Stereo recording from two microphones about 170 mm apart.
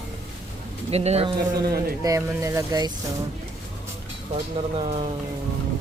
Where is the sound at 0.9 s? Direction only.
40° right (ahead or behind).